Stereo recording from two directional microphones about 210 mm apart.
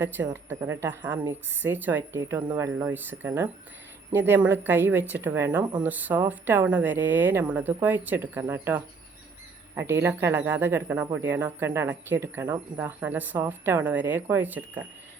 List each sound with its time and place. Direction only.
0.0 s speech: 10° right (ahead or behind)